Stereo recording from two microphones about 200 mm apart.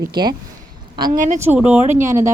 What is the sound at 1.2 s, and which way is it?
Speech, 40° right (ahead or behind).